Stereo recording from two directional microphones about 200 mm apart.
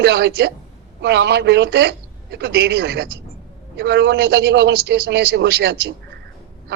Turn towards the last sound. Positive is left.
turn(degrees=-55)  # may be behind; listen again after turning